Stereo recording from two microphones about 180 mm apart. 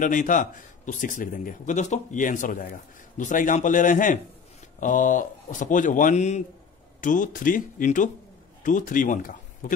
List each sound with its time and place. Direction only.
0.0 s speech: 45° left (ahead or behind)